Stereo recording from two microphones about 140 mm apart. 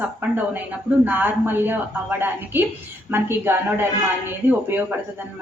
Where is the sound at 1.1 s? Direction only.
15° right (ahead or behind).